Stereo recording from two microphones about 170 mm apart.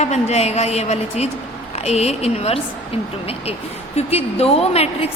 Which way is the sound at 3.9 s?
35° left (ahead or behind).